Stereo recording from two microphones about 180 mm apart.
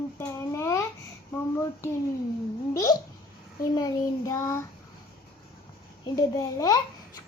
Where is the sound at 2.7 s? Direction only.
20° left (ahead or behind).